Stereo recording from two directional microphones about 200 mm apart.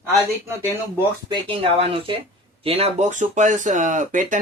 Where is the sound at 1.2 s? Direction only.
25° right (ahead or behind).